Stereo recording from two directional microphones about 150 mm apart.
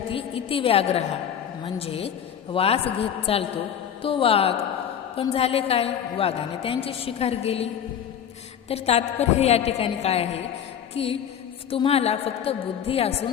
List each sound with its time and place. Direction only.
0.1 s a woman's voice: 40° left (ahead or behind)
8.7 s a woman's voice: 45° left (ahead or behind)